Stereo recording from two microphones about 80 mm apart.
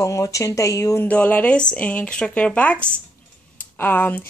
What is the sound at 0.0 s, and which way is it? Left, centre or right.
Speech, left.